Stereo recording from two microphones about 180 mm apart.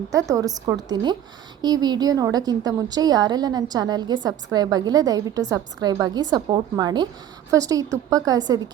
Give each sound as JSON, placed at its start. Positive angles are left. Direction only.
{"t": 0.1, "sound": "a woman's voice", "side_deg": -15}